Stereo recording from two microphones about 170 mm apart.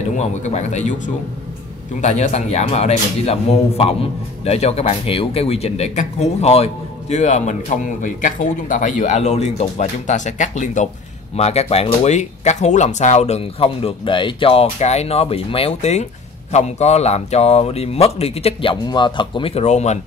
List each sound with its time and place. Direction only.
0.0 s a man's voice: 40° left (ahead or behind)